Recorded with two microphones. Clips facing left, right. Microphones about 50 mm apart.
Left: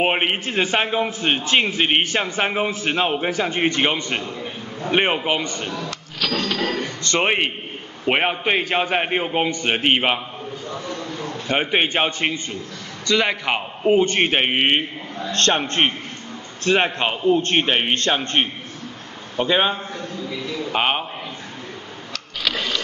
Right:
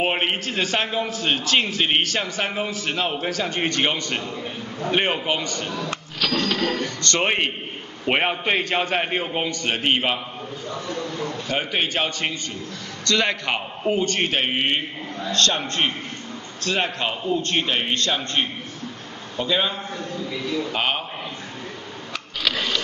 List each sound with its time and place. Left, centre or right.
0.0 s a man's voice: centre
4.2 s a man's voice: centre
4.9 s a man's voice: centre
6.2 s a man's voice: centre
6.6 s a man's voice: centre
10.7 s a sound: centre
11.4 s a man's voice: left
13.0 s a man's voice: centre
13.9 s a man's voice: left
20.2 s a man's voice: centre
20.7 s a man's voice: left